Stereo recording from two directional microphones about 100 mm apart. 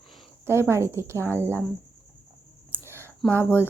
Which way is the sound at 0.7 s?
25° right (ahead or behind).